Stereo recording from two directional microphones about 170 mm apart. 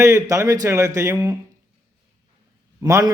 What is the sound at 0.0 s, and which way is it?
A man's voice, 15° right (ahead or behind).